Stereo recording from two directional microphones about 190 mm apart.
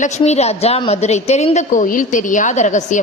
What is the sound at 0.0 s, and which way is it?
A woman's voice, 35° left (ahead or behind).